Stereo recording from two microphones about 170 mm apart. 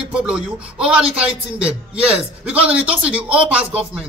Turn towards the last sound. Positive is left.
turn(degrees=-10)  # may be behind; listen again after turning